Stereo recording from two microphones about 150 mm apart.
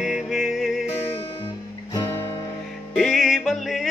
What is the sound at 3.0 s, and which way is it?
Music, centre (ahead or behind).